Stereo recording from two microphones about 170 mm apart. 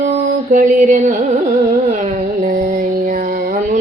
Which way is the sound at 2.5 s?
50° right (ahead or behind).